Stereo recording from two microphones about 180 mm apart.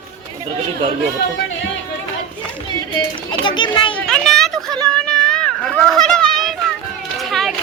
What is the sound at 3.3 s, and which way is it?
Speech, 25° left (ahead or behind).